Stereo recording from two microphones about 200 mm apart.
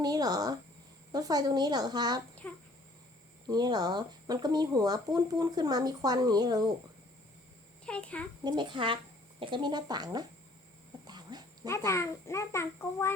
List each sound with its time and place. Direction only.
0.0 s speech: 20° right (ahead or behind)
3.4 s speech: 20° right (ahead or behind)
7.9 s a child's voice: 5° left (ahead or behind)
8.4 s speech: 20° right (ahead or behind)
11.0 s a sound: 20° right (ahead or behind)
11.7 s a child's voice: 15° left (ahead or behind)